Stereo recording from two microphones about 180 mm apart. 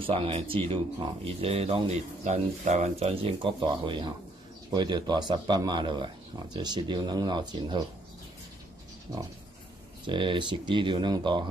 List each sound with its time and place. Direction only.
0.0 s speech: 30° right (ahead or behind)
10.0 s speech: 25° right (ahead or behind)